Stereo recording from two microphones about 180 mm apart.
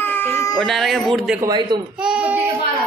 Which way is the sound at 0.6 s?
Centre (ahead or behind).